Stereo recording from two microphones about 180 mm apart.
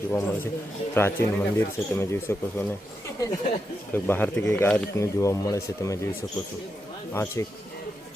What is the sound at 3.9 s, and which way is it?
Speech, 10° left (ahead or behind).